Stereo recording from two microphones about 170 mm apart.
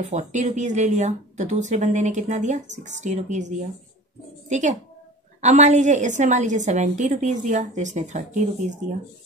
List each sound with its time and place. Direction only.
0.0 s a woman's voice: 45° right (ahead or behind)